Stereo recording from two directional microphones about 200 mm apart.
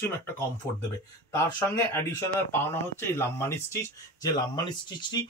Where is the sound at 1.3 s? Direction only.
15° left (ahead or behind).